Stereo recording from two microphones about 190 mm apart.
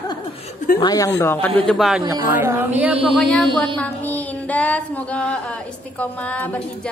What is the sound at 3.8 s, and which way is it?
Child singing, 10° left (ahead or behind).